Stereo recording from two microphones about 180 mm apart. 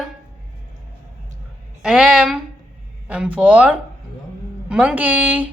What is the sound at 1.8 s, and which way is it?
Speech, 5° right (ahead or behind).